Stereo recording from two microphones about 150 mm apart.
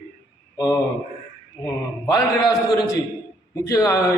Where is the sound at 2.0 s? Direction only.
25° left (ahead or behind).